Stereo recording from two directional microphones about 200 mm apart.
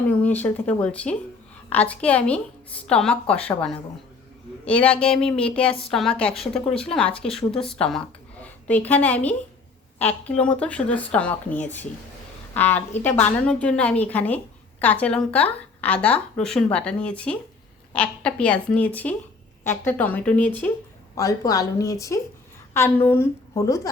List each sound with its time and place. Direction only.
0.1 s a woman's voice: 5° left (ahead or behind)
7.5 s speech: 30° left (ahead or behind)
7.8 s a woman's voice: 5° left (ahead or behind)